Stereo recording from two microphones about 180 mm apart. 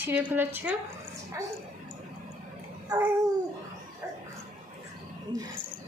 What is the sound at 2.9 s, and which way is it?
Speech, 20° right (ahead or behind).